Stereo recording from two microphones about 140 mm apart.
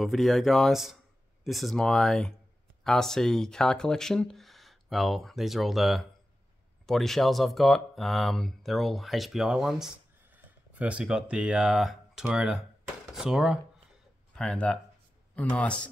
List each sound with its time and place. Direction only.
0.0 s speech: centre (ahead or behind)